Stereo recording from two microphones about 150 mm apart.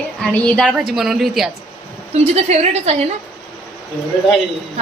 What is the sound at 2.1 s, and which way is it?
Speech, 45° right (ahead or behind).